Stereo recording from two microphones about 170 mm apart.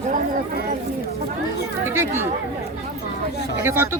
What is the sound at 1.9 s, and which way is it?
Speech, 15° right (ahead or behind).